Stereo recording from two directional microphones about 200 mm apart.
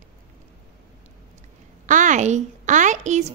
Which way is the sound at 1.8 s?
40° right (ahead or behind).